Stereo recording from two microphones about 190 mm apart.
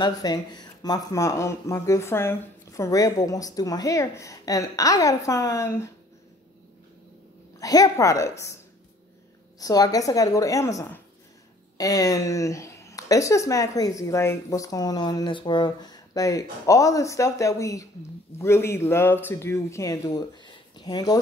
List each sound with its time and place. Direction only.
0.0 s a woman's voice: 20° left (ahead or behind)
7.5 s a woman's voice: 20° left (ahead or behind)
9.6 s a woman's voice: 20° left (ahead or behind)